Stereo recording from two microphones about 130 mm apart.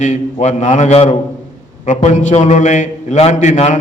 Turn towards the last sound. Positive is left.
turn(degrees=65)  # may be behind; listen again after turning